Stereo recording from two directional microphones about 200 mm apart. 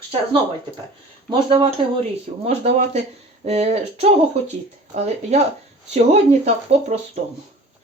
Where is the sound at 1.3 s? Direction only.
25° right (ahead or behind).